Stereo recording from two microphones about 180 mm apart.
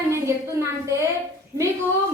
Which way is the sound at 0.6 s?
15° right (ahead or behind).